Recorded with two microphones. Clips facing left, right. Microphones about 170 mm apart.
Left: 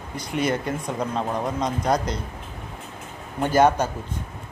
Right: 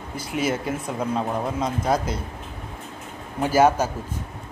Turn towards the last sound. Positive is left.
turn(degrees=-5)  # may be behind; listen again after turning